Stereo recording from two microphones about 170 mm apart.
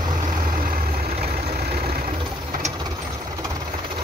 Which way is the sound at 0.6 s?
55° right (ahead or behind).